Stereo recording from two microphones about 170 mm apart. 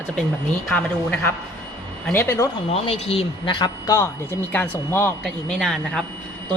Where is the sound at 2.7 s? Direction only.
35° left (ahead or behind).